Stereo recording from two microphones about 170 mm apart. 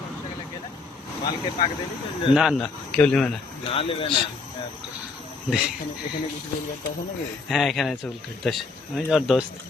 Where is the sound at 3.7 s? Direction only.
35° left (ahead or behind).